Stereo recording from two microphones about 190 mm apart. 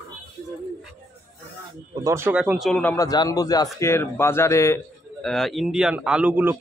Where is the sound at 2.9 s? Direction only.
20° left (ahead or behind).